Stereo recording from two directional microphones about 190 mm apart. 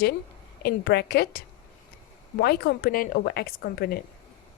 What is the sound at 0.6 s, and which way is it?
A woman's voice, 60° left (ahead or behind).